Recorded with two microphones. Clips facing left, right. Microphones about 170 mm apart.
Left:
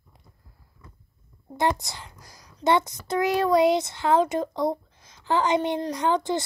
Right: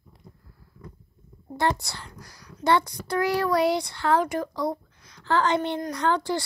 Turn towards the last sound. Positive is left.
turn(degrees=20)  # may be behind; listen again after turning